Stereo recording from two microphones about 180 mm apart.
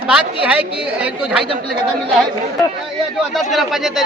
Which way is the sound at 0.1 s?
5° right (ahead or behind).